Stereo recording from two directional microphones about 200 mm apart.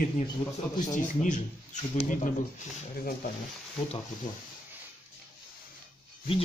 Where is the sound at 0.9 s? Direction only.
40° left (ahead or behind).